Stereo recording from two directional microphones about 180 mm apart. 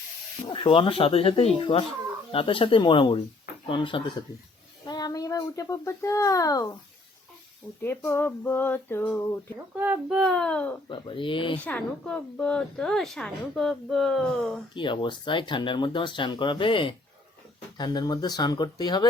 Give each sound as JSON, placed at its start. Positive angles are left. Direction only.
{"t": 0.4, "sound": "speech", "side_deg": 30}
{"t": 7.8, "sound": "a sound", "side_deg": 15}
{"t": 9.7, "sound": "a woman's voice", "side_deg": -10}
{"t": 10.8, "sound": "speech", "side_deg": 30}
{"t": 11.6, "sound": "a woman's voice", "side_deg": 5}
{"t": 14.8, "sound": "speech", "side_deg": 25}